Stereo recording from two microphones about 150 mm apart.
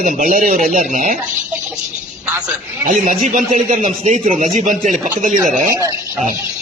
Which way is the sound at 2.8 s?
60° right (ahead or behind).